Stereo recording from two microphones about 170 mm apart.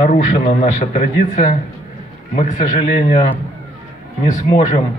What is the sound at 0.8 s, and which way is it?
A man's voice, 50° left (ahead or behind).